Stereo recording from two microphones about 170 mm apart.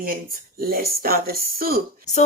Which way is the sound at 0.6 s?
60° right (ahead or behind).